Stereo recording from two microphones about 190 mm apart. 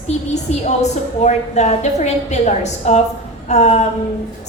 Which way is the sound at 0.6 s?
35° left (ahead or behind).